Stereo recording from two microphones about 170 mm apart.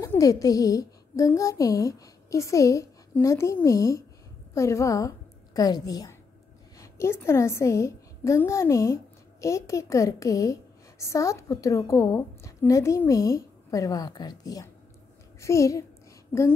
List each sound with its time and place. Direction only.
0.0 s a woman's voice: 20° left (ahead or behind)